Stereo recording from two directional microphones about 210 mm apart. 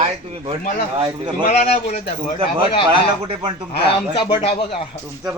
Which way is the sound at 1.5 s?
30° left (ahead or behind).